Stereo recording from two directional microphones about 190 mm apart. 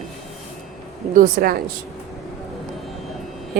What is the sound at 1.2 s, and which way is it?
Speech, 50° right (ahead or behind).